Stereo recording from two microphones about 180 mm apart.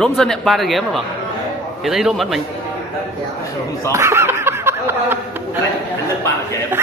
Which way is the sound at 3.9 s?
15° right (ahead or behind).